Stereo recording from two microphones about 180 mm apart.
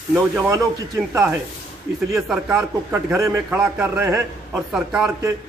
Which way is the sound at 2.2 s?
5° right (ahead or behind).